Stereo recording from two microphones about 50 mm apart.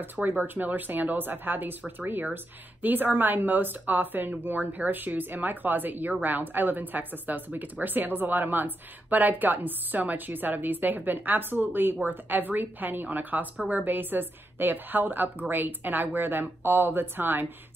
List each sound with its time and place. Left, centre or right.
0.0 s a woman's voice: right